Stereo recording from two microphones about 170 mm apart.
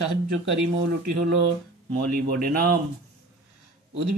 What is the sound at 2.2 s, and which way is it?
Speech, 60° right (ahead or behind).